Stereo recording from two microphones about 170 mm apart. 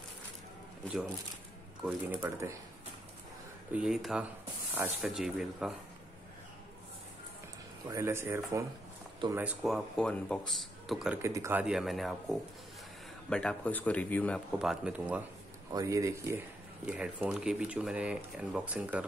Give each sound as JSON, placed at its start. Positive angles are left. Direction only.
{"t": 1.8, "sound": "speech", "side_deg": -10}
{"t": 3.7, "sound": "speech", "side_deg": -5}
{"t": 7.9, "sound": "speech", "side_deg": -15}
{"t": 9.9, "sound": "speech", "side_deg": 5}
{"t": 11.1, "sound": "speech", "side_deg": -15}
{"t": 11.6, "sound": "speech", "side_deg": 0}
{"t": 14.6, "sound": "speech", "side_deg": -5}
{"t": 15.7, "sound": "speech", "side_deg": -20}
{"t": 16.8, "sound": "speech", "side_deg": -5}